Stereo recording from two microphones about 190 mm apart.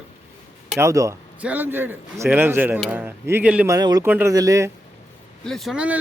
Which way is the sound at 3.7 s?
20° right (ahead or behind).